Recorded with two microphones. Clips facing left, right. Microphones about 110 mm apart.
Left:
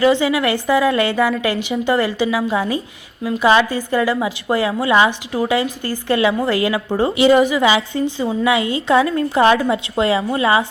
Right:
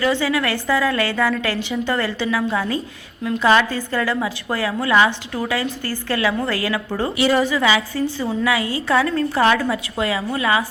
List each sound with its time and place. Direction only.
0.0 s a woman's voice: 15° left (ahead or behind)